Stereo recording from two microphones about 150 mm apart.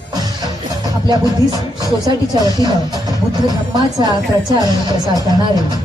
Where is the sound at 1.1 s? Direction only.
30° right (ahead or behind).